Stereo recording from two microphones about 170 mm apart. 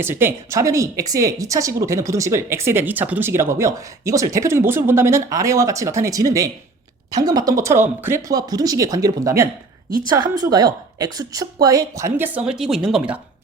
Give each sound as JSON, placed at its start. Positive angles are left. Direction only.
{"t": 0.0, "sound": "speech", "side_deg": -15}